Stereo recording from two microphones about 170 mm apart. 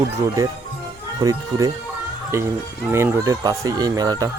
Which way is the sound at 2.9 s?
15° right (ahead or behind).